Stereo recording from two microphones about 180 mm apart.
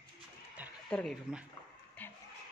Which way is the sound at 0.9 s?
5° left (ahead or behind).